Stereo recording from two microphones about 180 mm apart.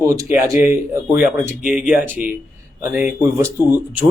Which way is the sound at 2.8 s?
10° right (ahead or behind).